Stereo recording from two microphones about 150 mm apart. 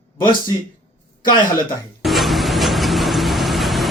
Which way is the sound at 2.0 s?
Centre (ahead or behind).